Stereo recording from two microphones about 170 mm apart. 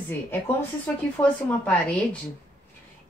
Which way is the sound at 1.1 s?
10° left (ahead or behind).